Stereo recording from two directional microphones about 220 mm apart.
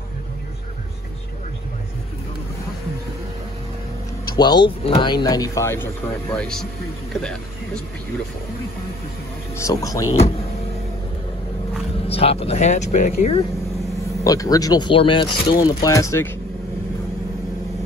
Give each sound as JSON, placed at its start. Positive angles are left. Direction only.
{"t": 4.4, "sound": "a man's voice", "side_deg": 20}
{"t": 9.6, "sound": "speech", "side_deg": 15}
{"t": 12.1, "sound": "speech", "side_deg": 25}
{"t": 14.2, "sound": "speech", "side_deg": 15}